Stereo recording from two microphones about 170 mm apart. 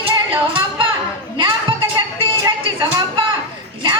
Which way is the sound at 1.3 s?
25° right (ahead or behind).